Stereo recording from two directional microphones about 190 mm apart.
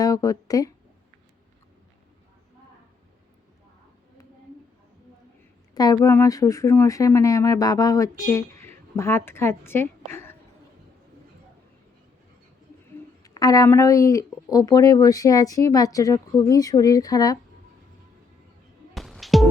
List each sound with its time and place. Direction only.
0.0 s speech: 20° left (ahead or behind)
5.7 s speech: 20° left (ahead or behind)
13.2 s speech: 20° left (ahead or behind)
18.9 s music: centre (ahead or behind)